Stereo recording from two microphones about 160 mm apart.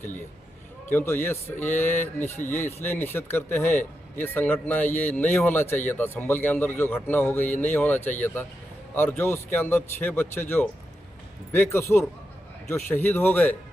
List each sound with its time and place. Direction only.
0.9 s a man's voice: 15° left (ahead or behind)